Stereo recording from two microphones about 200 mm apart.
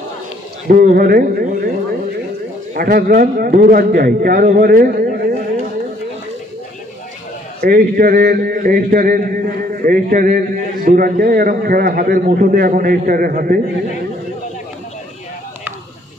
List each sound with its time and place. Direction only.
0.7 s a man's voice: 45° right (ahead or behind)
2.7 s a man's voice: 45° right (ahead or behind)
7.6 s a man's voice: 45° right (ahead or behind)